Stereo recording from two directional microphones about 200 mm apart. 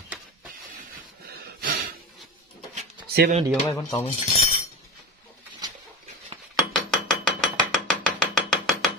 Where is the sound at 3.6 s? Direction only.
15° left (ahead or behind).